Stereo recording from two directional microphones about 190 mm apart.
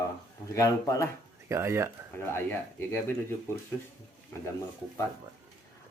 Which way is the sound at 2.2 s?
10° left (ahead or behind).